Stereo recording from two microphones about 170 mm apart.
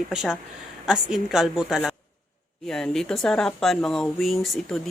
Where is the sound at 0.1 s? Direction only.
5° right (ahead or behind).